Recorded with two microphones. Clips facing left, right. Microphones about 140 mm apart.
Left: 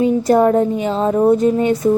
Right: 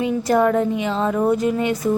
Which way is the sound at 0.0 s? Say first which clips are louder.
Left 5 dB; 30° left (ahead or behind).